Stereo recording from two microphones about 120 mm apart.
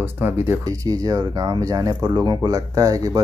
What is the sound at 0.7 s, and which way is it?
Speech, 30° right (ahead or behind).